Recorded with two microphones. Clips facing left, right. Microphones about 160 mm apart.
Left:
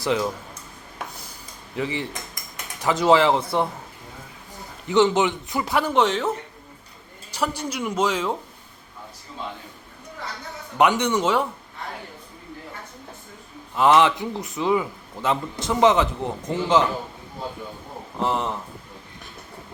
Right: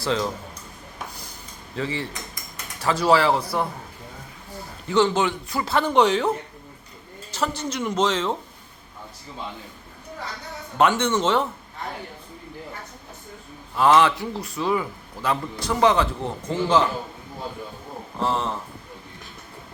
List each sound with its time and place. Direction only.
0.0 s a woman's voice: 15° left (ahead or behind)
1.7 s a woman's voice: 15° left (ahead or behind)
4.9 s a man's voice: 20° left (ahead or behind)
5.9 s speech: centre (ahead or behind)
7.3 s a woman's voice: 10° left (ahead or behind)
10.8 s a woman's voice: 15° left (ahead or behind)
13.7 s a man's voice: 20° left (ahead or behind)
18.2 s a woman's voice: 15° left (ahead or behind)